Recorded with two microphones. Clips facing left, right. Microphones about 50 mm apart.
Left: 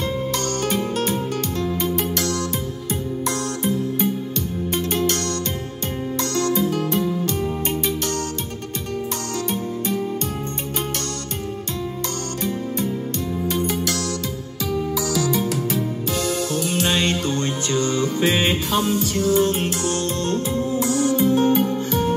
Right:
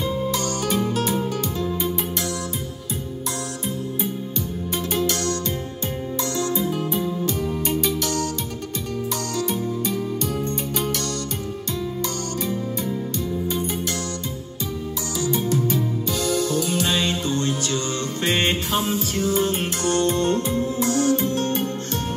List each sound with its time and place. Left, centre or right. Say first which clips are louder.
0.3 s music: left 1 dB; left
4.7 s music: left 1 dB; left
6.3 s music: left 4 dB; left
6.7 s music: left 3 dB; left
7.3 s music: even; left
9.5 s music: even; left
13.5 s music: left 3 dB; left
15.2 s music: even; left
16.2 s music: right 1 dB; left
17.3 s music: left 1 dB; left
17.9 s music: left 3 dB; centre